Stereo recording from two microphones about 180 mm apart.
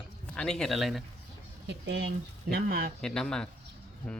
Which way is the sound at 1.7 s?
70° right (ahead or behind).